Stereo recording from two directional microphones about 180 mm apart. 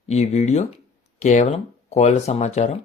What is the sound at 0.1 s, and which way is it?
Speech, 40° left (ahead or behind).